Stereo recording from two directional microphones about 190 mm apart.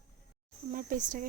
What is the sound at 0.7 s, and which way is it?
Speech, 45° right (ahead or behind).